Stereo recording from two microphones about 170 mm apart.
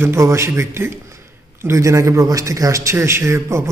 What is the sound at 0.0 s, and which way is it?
A woman's voice, 15° right (ahead or behind).